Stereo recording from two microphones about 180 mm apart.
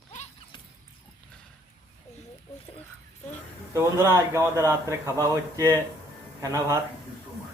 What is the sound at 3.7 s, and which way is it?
A man's voice, 15° right (ahead or behind).